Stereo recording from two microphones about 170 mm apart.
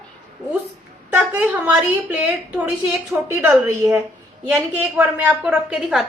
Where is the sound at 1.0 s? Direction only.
10° right (ahead or behind).